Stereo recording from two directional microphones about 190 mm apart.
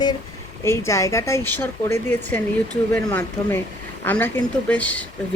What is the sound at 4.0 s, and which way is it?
A woman's voice, 10° left (ahead or behind).